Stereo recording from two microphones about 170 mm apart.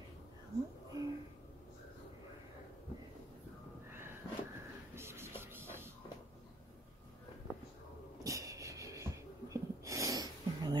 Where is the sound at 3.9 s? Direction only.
15° right (ahead or behind).